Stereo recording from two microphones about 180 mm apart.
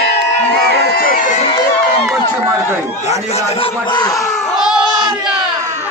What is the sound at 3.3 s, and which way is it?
Speech, 30° left (ahead or behind).